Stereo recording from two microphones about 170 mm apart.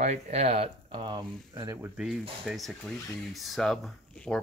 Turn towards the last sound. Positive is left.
turn(degrees=5)  # may be behind; listen again after turning